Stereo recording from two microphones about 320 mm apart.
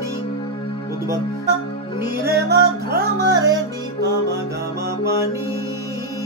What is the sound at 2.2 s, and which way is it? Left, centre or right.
Music, centre.